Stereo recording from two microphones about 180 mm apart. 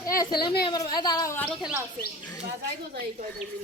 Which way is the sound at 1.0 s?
15° left (ahead or behind).